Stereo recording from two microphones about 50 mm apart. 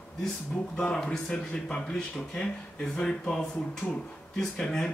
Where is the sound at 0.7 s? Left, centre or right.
Centre.